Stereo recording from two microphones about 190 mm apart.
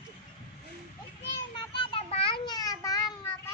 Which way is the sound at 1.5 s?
25° left (ahead or behind).